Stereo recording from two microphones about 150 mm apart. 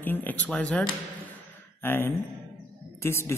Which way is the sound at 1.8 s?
15° left (ahead or behind).